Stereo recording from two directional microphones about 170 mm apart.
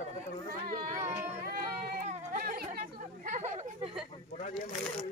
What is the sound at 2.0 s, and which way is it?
Chatter, 50° right (ahead or behind).